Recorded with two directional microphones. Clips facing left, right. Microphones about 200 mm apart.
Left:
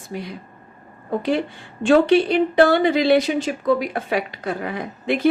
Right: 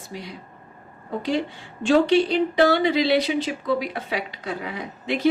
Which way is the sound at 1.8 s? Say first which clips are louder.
Left 3 dB; 55° left (ahead or behind).